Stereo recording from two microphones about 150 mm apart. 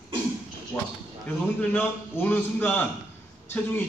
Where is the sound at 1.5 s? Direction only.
15° left (ahead or behind).